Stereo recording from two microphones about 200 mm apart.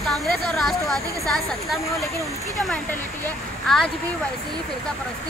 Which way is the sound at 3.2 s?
Centre (ahead or behind).